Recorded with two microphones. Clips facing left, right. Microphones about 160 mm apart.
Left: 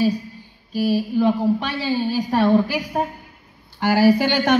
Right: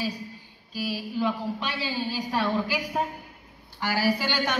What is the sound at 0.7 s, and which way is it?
A man's voice, 50° left (ahead or behind).